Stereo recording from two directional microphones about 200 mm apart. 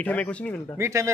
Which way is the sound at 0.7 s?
15° right (ahead or behind).